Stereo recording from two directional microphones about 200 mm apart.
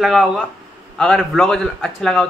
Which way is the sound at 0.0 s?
Centre (ahead or behind).